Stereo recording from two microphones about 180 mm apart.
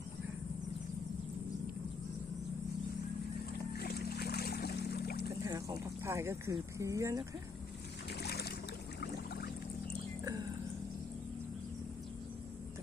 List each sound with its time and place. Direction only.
3.8 s music: 60° left (ahead or behind)
5.4 s speech: 20° right (ahead or behind)
8.2 s boat: 65° left (ahead or behind)
9.0 s pour: 65° left (ahead or behind)